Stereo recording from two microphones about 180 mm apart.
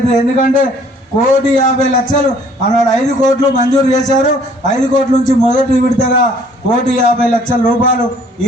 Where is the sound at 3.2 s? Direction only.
40° left (ahead or behind).